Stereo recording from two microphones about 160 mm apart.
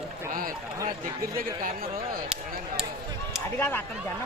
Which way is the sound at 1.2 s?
65° right (ahead or behind).